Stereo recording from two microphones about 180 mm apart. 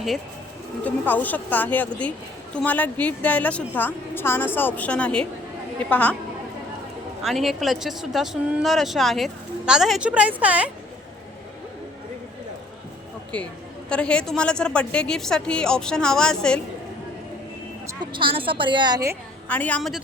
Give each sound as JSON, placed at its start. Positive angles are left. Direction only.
{"t": 0.9, "sound": "a woman's voice", "side_deg": 10}
{"t": 7.2, "sound": "speech", "side_deg": 0}
{"t": 13.3, "sound": "a woman's voice", "side_deg": 5}
{"t": 17.8, "sound": "a woman's voice", "side_deg": -25}
{"t": 19.5, "sound": "a woman's voice", "side_deg": 10}